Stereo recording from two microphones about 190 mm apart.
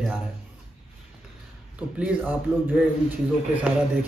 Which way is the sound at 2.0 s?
5° right (ahead or behind).